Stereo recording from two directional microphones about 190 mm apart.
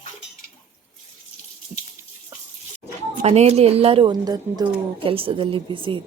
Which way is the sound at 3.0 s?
35° right (ahead or behind).